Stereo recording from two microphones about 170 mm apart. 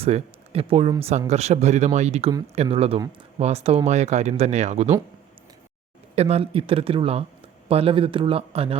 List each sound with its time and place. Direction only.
0.0 s speech: 35° right (ahead or behind)
6.1 s speech: 35° right (ahead or behind)